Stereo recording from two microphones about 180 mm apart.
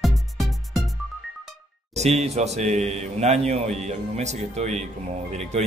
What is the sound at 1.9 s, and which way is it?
Speech, 35° right (ahead or behind).